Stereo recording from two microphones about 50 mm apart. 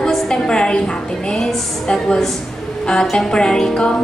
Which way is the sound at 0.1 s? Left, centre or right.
Centre.